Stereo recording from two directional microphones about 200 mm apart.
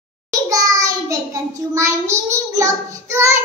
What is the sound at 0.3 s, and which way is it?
A child's voice, 15° right (ahead or behind).